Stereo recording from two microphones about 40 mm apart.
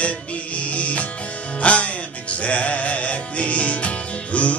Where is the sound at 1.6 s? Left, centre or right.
Left.